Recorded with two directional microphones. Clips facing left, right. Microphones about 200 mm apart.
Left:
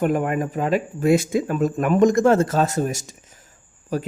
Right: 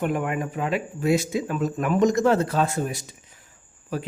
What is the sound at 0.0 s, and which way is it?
A man's voice, 40° left (ahead or behind).